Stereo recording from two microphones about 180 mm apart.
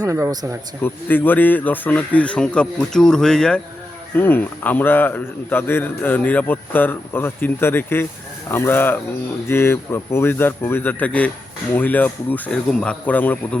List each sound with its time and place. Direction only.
0.0 s speech: 20° right (ahead or behind)
0.8 s a man's voice: 10° left (ahead or behind)